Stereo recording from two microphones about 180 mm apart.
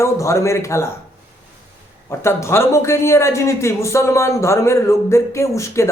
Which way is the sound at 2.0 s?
15° left (ahead or behind).